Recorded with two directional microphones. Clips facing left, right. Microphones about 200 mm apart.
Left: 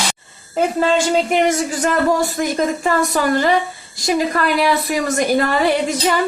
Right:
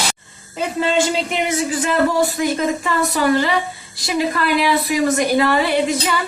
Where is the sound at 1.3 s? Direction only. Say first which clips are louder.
Left 4 dB; 45° left (ahead or behind).